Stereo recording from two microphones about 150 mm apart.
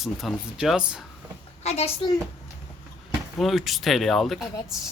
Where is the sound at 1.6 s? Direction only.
45° left (ahead or behind).